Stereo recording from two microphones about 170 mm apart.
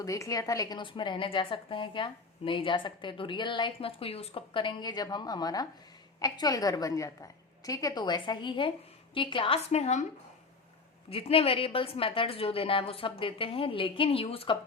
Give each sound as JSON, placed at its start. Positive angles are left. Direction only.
{"t": 0.0, "sound": "a woman's voice", "side_deg": 20}
{"t": 11.1, "sound": "a woman's voice", "side_deg": 35}